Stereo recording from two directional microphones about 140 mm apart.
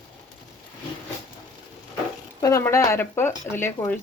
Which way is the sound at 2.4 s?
20° left (ahead or behind).